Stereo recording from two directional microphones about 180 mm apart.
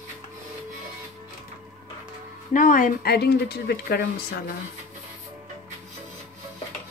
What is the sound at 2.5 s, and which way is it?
Speech, 50° left (ahead or behind).